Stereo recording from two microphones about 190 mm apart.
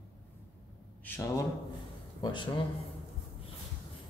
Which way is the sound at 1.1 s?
10° left (ahead or behind).